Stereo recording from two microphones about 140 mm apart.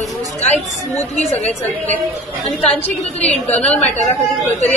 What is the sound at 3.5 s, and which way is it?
Speech, 10° left (ahead or behind).